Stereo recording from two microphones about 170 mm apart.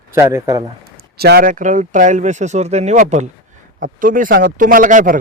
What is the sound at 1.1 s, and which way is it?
Speech, 65° right (ahead or behind).